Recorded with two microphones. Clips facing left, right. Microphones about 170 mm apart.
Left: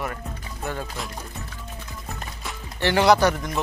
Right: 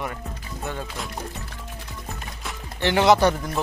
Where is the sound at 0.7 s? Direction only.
Centre (ahead or behind).